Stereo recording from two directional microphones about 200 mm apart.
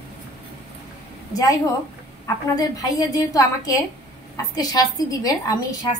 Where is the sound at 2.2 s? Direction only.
20° left (ahead or behind).